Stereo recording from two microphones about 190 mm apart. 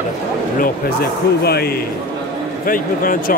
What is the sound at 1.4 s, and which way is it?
A man's voice, 55° left (ahead or behind).